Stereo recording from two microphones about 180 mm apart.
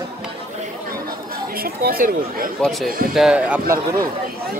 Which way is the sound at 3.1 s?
5° right (ahead or behind).